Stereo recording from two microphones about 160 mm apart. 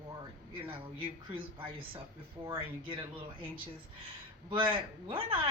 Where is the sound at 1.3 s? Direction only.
35° right (ahead or behind).